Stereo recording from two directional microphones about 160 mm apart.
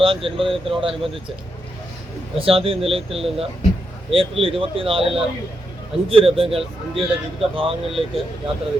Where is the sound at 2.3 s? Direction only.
35° right (ahead or behind).